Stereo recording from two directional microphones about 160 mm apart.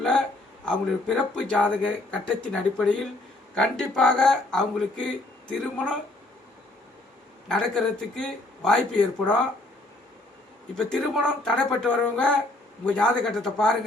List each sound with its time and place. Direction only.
0.6 s speech: 5° left (ahead or behind)
7.4 s speech: 5° left (ahead or behind)
10.8 s speech: 5° left (ahead or behind)